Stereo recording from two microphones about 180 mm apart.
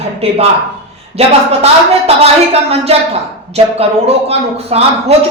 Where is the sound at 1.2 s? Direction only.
35° right (ahead or behind).